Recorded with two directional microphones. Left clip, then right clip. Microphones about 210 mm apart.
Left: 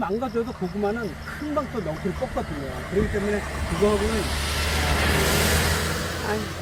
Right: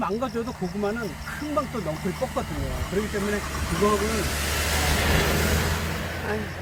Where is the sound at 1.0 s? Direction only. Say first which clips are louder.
Left 1 dB; 65° right (ahead or behind); by 4.8 s 35° right (ahead or behind).